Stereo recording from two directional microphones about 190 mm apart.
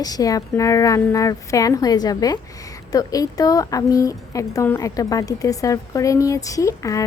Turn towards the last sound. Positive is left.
turn(degrees=15)  # may be behind; listen again after turning